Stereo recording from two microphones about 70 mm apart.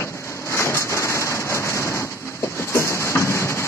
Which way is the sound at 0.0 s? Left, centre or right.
Left.